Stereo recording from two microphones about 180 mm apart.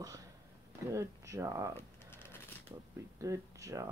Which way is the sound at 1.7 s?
10° left (ahead or behind).